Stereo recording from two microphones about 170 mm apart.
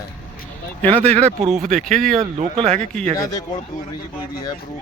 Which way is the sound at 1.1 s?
40° right (ahead or behind).